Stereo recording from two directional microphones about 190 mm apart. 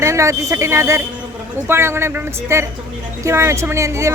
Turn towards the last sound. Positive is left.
turn(degrees=-15)  # may be behind; listen again after turning